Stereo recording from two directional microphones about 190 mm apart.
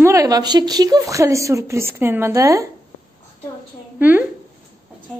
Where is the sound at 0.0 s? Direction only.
15° right (ahead or behind).